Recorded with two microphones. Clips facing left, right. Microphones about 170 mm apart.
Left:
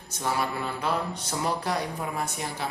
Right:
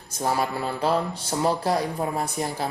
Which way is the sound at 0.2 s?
35° right (ahead or behind).